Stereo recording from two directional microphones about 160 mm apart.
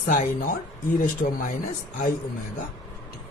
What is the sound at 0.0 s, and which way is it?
Speech, 60° left (ahead or behind).